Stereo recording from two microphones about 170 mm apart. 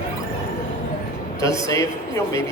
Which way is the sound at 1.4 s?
20° left (ahead or behind).